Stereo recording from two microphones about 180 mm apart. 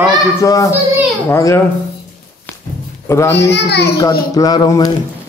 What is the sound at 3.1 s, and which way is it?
Speech, 15° left (ahead or behind).